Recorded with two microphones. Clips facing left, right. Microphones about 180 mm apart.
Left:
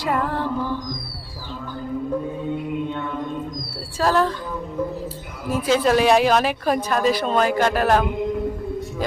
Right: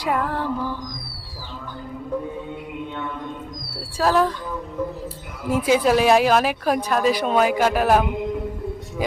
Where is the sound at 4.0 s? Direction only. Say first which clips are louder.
Even; 5° right (ahead or behind).